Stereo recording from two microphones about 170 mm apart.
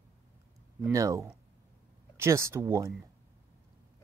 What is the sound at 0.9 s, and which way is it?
Speech, 20° right (ahead or behind).